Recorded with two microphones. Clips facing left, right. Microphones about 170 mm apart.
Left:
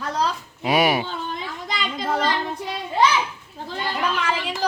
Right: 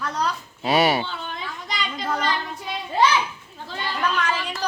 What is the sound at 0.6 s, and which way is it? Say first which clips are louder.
Speech: even; 10° left (ahead or behind).